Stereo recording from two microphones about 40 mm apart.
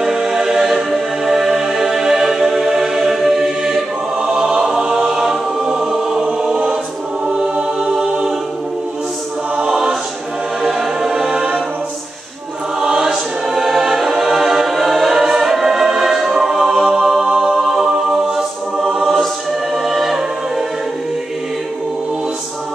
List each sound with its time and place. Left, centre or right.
0.0 s music: centre
7.8 s music: centre
9.7 s choir: centre
10.6 s music: centre
11.3 s music: right
12.8 s choir: centre
15.3 s music: centre
19.7 s choir: centre